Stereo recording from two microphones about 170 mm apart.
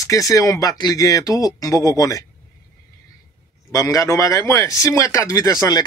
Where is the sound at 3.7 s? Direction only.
20° left (ahead or behind).